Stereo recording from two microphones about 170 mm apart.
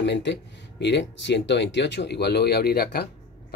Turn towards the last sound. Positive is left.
turn(degrees=70)  # may be behind; listen again after turning